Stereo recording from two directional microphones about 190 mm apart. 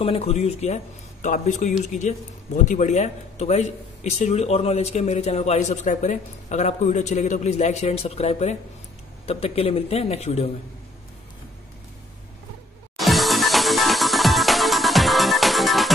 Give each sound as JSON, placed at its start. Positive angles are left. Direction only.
{"t": 0.0, "sound": "a man's voice", "side_deg": 30}
{"t": 12.9, "sound": "music", "side_deg": 0}